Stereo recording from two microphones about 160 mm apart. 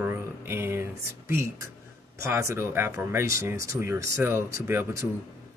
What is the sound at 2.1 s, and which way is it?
Speech, 15° right (ahead or behind).